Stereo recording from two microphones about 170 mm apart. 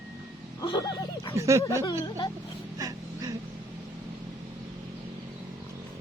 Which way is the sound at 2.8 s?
20° right (ahead or behind).